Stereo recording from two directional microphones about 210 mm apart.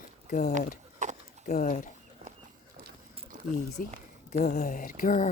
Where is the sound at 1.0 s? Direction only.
35° right (ahead or behind).